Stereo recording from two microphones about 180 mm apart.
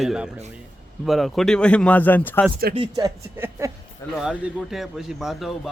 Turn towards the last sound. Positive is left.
turn(degrees=0)  # may be behind; listen again after turning